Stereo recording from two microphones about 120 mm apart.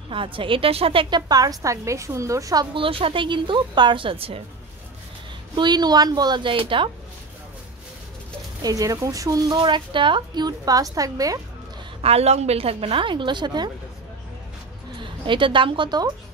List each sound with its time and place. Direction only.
0.1 s a woman's voice: 45° right (ahead or behind)
1.3 s a woman's voice: 30° right (ahead or behind)
2.8 s a woman's voice: 50° right (ahead or behind)
5.6 s a woman's voice: 35° right (ahead or behind)
8.6 s a woman's voice: 30° right (ahead or behind)
12.0 s a woman's voice: 60° right (ahead or behind); by 13.7 s 40° right (ahead or behind)
15.0 s a woman's voice: 45° right (ahead or behind)